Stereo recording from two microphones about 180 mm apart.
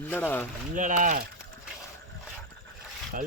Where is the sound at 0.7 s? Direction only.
45° right (ahead or behind).